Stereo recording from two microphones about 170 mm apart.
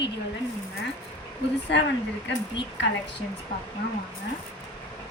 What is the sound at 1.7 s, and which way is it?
Speech, 90° left.